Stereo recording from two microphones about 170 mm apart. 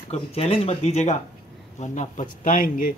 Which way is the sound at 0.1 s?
35° left (ahead or behind).